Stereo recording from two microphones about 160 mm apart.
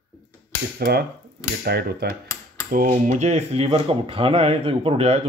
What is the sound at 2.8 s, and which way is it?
Speech, 45° right (ahead or behind).